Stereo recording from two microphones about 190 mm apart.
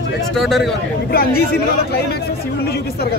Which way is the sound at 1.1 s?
55° left (ahead or behind).